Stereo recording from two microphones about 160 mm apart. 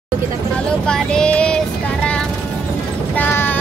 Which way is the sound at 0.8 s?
5° left (ahead or behind).